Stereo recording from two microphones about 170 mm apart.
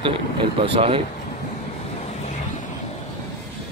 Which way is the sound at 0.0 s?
30° right (ahead or behind).